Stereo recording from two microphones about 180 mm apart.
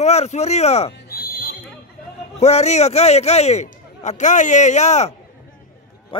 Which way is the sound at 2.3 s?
40° left (ahead or behind).